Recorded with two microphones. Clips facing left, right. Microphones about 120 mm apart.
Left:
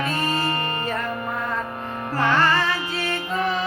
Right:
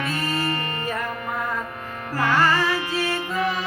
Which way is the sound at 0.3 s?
35° left (ahead or behind).